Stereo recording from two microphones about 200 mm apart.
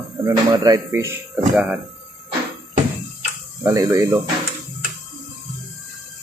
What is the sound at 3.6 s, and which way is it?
Speech, 15° right (ahead or behind).